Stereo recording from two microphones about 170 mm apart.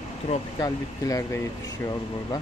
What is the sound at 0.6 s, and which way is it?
Speech, 20° left (ahead or behind).